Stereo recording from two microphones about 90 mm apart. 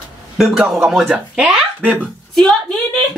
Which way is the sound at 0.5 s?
5° right (ahead or behind).